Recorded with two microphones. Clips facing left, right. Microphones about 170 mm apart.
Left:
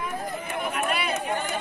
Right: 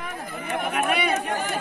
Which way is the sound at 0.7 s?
60° right (ahead or behind).